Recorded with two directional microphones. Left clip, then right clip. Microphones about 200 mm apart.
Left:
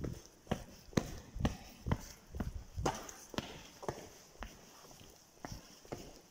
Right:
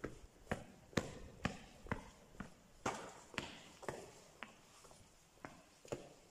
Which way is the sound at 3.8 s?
10° left (ahead or behind).